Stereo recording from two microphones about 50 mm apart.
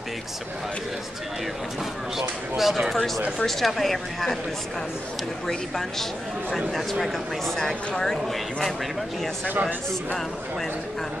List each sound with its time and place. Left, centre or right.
2.1 s speech: centre
5.5 s a woman's voice: centre
9.5 s a man's voice: right